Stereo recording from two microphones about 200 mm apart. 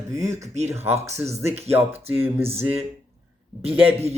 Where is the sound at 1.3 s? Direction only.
30° right (ahead or behind).